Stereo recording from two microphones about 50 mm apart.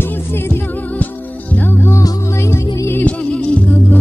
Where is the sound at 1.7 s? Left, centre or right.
Left.